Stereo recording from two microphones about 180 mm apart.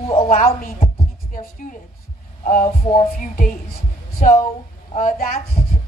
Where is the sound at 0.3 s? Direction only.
45° left (ahead or behind).